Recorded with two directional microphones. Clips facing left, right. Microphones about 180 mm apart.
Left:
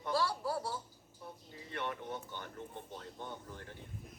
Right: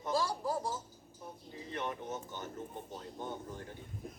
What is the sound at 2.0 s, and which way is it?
Speech, 45° right (ahead or behind).